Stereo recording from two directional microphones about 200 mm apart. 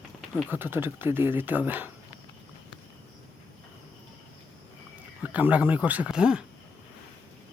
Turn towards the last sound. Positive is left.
turn(degrees=-5)  # may be behind; listen again after turning